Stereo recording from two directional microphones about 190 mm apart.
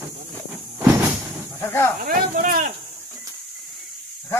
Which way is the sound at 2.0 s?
45° right (ahead or behind).